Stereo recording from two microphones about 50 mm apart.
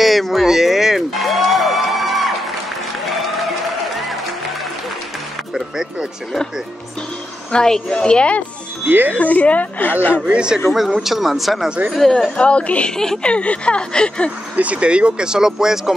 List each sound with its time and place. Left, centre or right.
0.0 s music: centre
5.5 s music: centre
7.5 s a woman's voice: centre
8.8 s speech: right
9.1 s speech: left
10.2 s speech: centre
11.0 s speech: centre
12.4 s speech: left
12.9 s a woman's voice: centre
13.3 s speech: left
14.5 s speech: right; by 15.9 s centre